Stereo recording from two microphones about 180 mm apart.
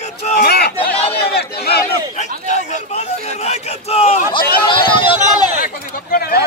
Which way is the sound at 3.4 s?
35° left (ahead or behind).